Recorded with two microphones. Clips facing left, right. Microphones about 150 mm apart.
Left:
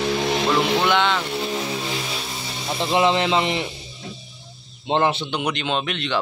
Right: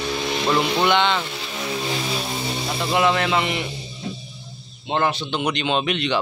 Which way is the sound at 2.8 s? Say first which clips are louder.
Left 1 dB; 25° left (ahead or behind).